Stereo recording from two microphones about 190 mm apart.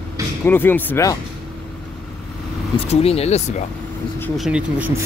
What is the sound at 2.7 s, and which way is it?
Speech, 30° left (ahead or behind).